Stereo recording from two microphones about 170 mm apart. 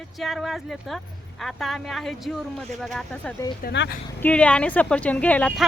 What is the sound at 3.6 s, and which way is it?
Speech, 90° left.